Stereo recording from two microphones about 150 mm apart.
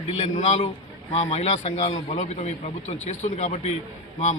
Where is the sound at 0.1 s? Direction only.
50° left (ahead or behind).